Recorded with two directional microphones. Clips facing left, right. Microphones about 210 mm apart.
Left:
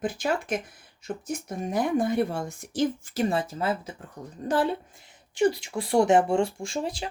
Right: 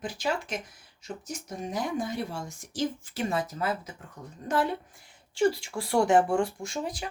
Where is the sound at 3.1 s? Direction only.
30° left (ahead or behind).